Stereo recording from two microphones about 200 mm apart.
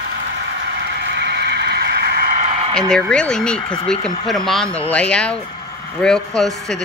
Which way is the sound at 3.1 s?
5° left (ahead or behind).